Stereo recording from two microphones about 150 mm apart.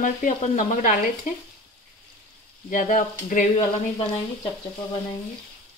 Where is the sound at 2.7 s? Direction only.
60° left (ahead or behind).